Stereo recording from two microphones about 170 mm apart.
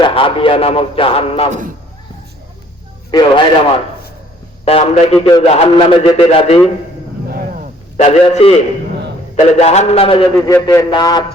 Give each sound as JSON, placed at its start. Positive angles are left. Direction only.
{"t": 0.0, "sound": "a man's voice", "side_deg": 30}
{"t": 3.1, "sound": "a man's voice", "side_deg": 25}
{"t": 7.3, "sound": "roaring cats", "side_deg": -55}
{"t": 7.9, "sound": "a man's voice", "side_deg": 40}
{"t": 10.3, "sound": "speech", "side_deg": 15}